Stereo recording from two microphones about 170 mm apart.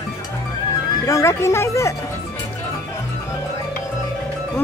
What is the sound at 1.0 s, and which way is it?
Speech, 15° left (ahead or behind).